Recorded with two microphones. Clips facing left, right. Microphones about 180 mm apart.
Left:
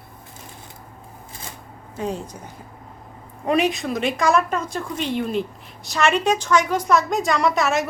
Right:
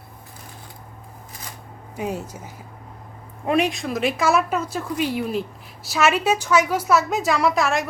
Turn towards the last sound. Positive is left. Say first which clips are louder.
# even
turn(degrees=0)  # may be behind; listen again after turning